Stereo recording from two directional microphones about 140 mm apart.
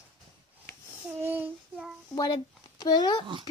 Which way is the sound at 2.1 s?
25° left (ahead or behind).